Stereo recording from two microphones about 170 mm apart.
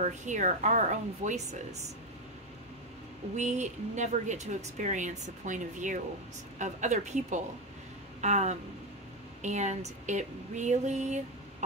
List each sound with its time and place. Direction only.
0.0 s speech: 45° right (ahead or behind)
3.3 s speech: 45° right (ahead or behind)